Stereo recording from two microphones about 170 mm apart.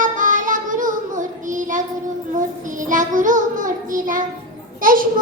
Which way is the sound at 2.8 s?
50° right (ahead or behind).